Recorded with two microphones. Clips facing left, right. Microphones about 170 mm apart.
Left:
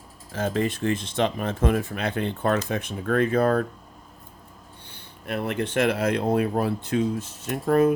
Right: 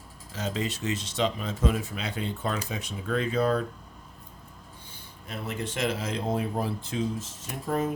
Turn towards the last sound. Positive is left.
turn(degrees=65)  # may be behind; listen again after turning